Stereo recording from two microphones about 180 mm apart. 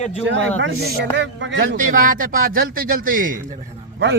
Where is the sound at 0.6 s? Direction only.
65° right (ahead or behind); by 1.6 s 85° right.